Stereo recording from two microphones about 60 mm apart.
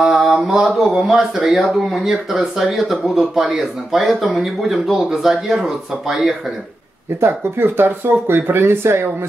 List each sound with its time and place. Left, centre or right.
0.0 s mantra: centre
0.9 s speech: centre
7.2 s speech: right